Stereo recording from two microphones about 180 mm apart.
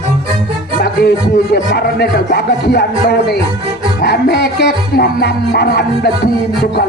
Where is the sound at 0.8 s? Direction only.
60° left (ahead or behind).